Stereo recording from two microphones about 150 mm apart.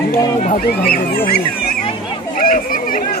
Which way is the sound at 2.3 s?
70° left (ahead or behind).